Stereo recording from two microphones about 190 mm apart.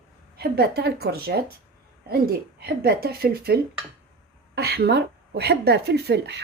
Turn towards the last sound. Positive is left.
turn(degrees=-60)  # may be behind; listen again after turning